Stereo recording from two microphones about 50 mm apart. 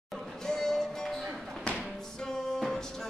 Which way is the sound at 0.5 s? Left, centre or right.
Centre.